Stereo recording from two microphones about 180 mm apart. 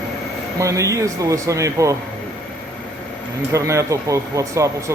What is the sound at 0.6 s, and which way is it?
Speech, 15° right (ahead or behind).